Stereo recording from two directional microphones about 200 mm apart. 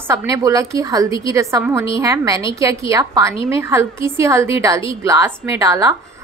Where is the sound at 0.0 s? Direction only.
15° right (ahead or behind).